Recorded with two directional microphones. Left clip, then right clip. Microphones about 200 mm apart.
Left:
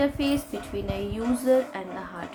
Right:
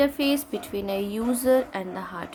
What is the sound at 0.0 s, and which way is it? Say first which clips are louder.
A woman's voice: right 2 dB; 55° right (ahead or behind).